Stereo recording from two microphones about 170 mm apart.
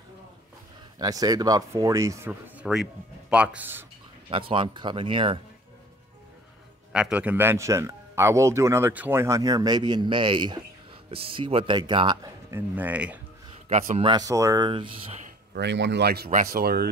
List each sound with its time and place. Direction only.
0.9 s a man's voice: 20° right (ahead or behind)
4.3 s speech: 30° right (ahead or behind)
6.9 s a man's voice: 5° right (ahead or behind)
13.7 s speech: 40° right (ahead or behind)
14.1 s speech: 20° right (ahead or behind)
15.5 s speech: 90° right; by 16.3 s 70° right (ahead or behind)
16.3 s speech: 55° right (ahead or behind)